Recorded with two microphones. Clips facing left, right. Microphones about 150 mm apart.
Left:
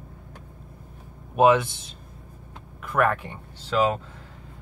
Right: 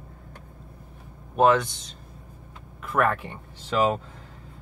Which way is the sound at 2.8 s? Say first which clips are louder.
Left 1 dB; centre (ahead or behind).